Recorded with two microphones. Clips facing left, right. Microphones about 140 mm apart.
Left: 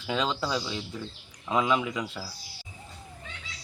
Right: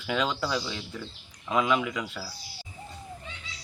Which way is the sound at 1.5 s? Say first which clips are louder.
Even; 25° left (ahead or behind).